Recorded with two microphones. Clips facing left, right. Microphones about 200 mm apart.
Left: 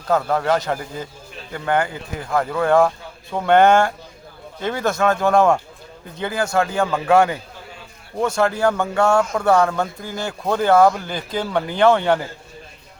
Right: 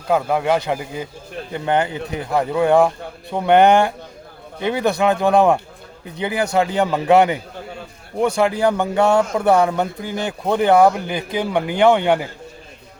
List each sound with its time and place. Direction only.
0.1 s speech: 15° right (ahead or behind)
8.4 s speech: 15° right (ahead or behind)